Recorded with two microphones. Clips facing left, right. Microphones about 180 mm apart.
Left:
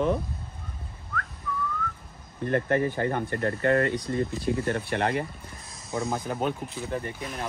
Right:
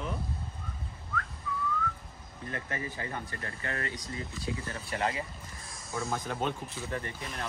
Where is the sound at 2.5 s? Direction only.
60° left (ahead or behind).